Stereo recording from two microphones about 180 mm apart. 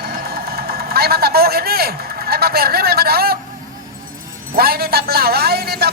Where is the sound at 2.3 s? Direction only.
60° right (ahead or behind).